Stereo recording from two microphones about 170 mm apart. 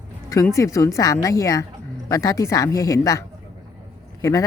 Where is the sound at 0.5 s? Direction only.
20° left (ahead or behind).